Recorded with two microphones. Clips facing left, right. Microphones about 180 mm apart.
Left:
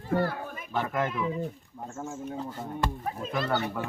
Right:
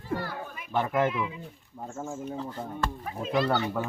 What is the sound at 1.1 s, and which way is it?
Speech, 40° left (ahead or behind).